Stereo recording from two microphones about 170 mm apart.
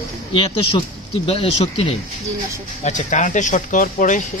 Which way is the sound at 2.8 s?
45° left (ahead or behind).